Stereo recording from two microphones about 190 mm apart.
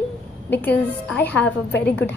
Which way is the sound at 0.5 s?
10° left (ahead or behind).